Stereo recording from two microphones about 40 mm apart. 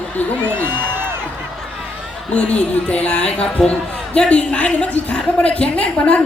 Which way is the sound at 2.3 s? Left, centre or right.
Left.